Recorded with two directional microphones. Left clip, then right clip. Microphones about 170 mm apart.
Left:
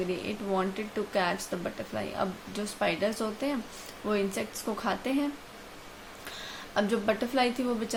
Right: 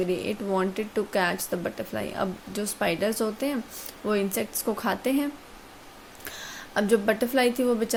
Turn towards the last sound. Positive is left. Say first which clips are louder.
# right 5 dB
turn(degrees=-45)  # may be behind; listen again after turning